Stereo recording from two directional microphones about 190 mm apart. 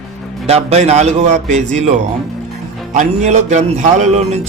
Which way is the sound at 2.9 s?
35° right (ahead or behind).